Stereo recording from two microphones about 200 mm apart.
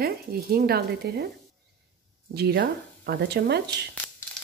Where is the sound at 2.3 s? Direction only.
55° right (ahead or behind).